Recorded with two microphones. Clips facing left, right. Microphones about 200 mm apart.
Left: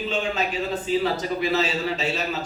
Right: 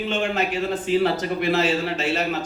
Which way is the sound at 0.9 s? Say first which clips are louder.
Right 3 dB; 65° right (ahead or behind).